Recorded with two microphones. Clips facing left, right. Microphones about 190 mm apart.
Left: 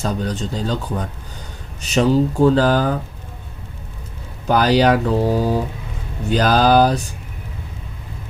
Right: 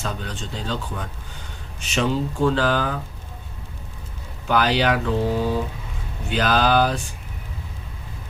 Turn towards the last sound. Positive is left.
turn(degrees=40)  # may be behind; listen again after turning